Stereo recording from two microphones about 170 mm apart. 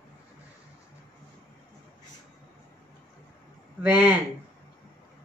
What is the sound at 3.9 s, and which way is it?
Speech, 25° left (ahead or behind).